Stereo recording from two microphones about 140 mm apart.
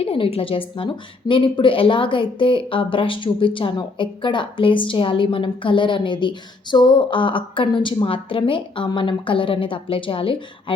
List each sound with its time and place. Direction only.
0.0 s speech: 40° left (ahead or behind)